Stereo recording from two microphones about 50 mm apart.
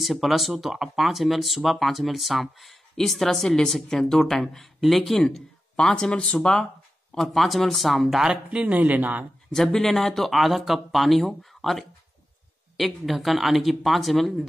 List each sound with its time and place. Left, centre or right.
0.0 s speech: centre
8.5 s speech: right
9.5 s speech: centre